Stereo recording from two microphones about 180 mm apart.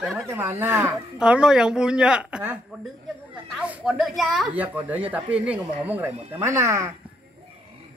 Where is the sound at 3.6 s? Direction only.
5° right (ahead or behind).